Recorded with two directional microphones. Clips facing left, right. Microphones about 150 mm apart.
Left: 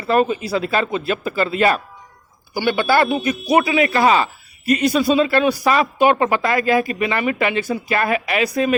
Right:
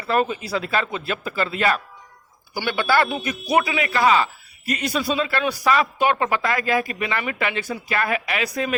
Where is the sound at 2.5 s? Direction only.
20° left (ahead or behind).